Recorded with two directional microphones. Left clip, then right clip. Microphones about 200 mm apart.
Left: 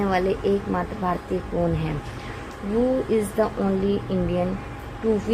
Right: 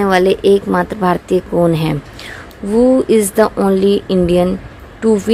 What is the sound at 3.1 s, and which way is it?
A woman's voice, 45° right (ahead or behind).